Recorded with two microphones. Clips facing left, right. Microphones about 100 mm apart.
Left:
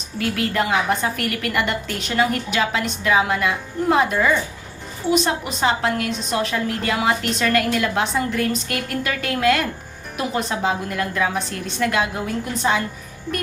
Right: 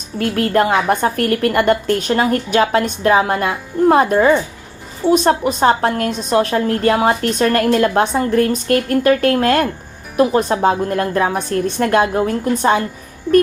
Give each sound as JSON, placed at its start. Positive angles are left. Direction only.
{"t": 0.2, "sound": "a woman's voice", "side_deg": -45}